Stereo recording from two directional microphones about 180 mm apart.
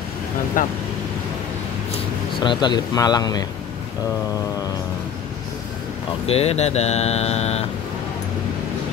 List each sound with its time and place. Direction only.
0.6 s speech: 45° left (ahead or behind)
2.0 s speech: 25° left (ahead or behind)
6.2 s speech: 35° left (ahead or behind)